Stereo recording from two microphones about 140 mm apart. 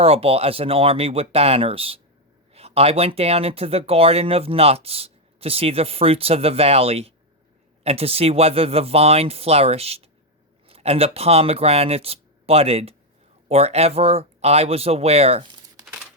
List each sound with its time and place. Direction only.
0.0 s speech: 45° right (ahead or behind)